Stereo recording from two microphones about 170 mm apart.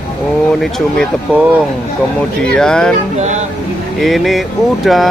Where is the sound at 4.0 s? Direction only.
Centre (ahead or behind).